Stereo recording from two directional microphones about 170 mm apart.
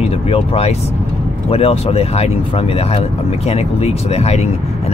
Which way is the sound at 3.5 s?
35° left (ahead or behind).